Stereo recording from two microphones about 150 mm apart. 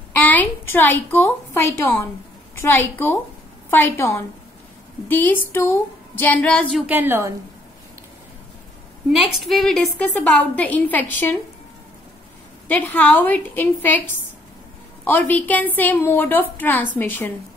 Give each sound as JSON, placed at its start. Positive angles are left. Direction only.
{"t": 0.2, "sound": "a woman's voice", "side_deg": 10}
{"t": 6.7, "sound": "a woman's voice", "side_deg": -10}
{"t": 9.5, "sound": "a woman's voice", "side_deg": 0}
{"t": 12.6, "sound": "a woman's voice", "side_deg": 10}
{"t": 15.0, "sound": "a woman's voice", "side_deg": 10}